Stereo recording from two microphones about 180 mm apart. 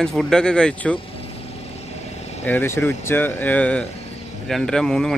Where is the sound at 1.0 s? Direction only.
30° left (ahead or behind).